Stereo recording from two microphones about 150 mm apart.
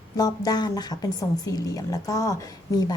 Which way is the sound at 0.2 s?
25° left (ahead or behind).